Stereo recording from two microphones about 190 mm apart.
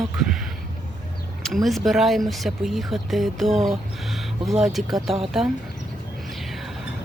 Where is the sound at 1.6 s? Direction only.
Centre (ahead or behind).